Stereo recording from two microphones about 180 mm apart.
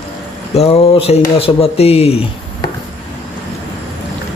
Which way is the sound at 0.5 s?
30° left (ahead or behind).